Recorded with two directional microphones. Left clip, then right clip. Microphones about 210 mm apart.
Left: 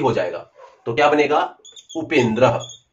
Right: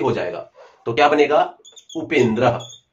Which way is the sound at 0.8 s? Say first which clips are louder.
Right 1 dB; 40° right (ahead or behind).